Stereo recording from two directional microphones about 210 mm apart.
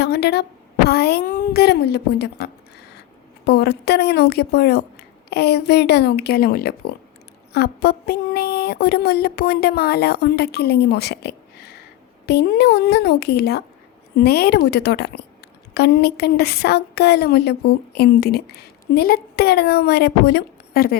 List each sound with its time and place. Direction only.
0.0 s a woman's voice: 50° left (ahead or behind)